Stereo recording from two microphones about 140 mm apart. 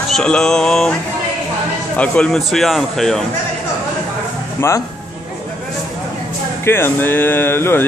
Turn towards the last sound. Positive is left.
turn(degrees=15)  # may be behind; listen again after turning